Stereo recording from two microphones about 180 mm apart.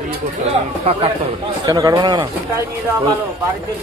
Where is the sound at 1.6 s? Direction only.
20° right (ahead or behind).